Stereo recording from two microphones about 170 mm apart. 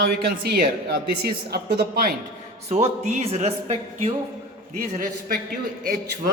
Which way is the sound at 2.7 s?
40° right (ahead or behind).